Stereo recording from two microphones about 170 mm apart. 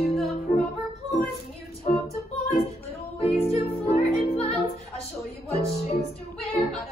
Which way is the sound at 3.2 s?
40° left (ahead or behind).